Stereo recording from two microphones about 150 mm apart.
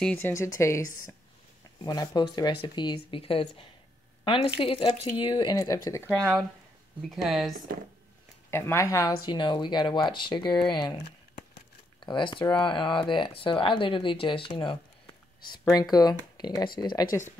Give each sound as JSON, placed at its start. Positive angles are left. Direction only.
{"t": 0.2, "sound": "speech", "side_deg": 20}
{"t": 1.9, "sound": "speech", "side_deg": 30}
{"t": 7.0, "sound": "speech", "side_deg": 0}
{"t": 8.5, "sound": "speech", "side_deg": 15}
{"t": 9.2, "sound": "speech", "side_deg": 30}